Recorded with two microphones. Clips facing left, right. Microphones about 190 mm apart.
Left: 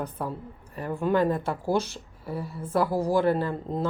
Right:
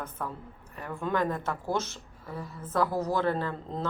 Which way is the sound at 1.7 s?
15° left (ahead or behind).